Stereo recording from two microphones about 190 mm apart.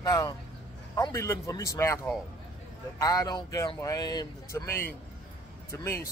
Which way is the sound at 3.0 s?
20° left (ahead or behind).